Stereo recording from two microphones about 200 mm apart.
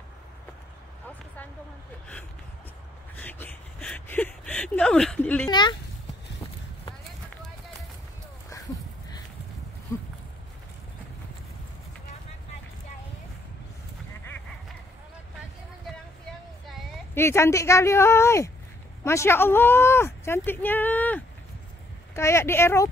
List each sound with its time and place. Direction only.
3.2 s speech: 10° left (ahead or behind)
5.5 s speech: 20° left (ahead or behind)
16.3 s a sound: 5° left (ahead or behind)
19.0 s speech: 10° left (ahead or behind)